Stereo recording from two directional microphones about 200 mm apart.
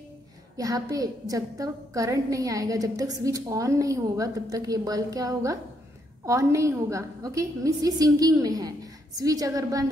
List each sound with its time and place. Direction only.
0.6 s a woman's voice: 15° right (ahead or behind)